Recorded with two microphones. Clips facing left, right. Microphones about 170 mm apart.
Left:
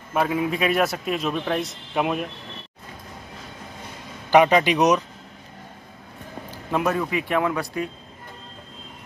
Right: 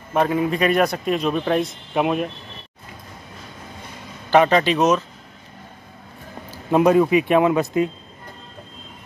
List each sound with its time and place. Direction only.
0.1 s a man's voice: 5° left (ahead or behind)
4.3 s a man's voice: 10° left (ahead or behind)
6.7 s speech: 20° right (ahead or behind)